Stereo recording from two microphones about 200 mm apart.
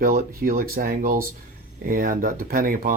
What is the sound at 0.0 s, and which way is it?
Speech, 45° right (ahead or behind).